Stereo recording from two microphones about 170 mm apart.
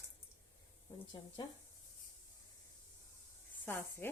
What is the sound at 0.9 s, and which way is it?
Speech, 20° left (ahead or behind).